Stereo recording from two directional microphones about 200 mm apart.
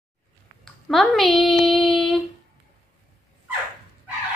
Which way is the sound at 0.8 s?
Centre (ahead or behind).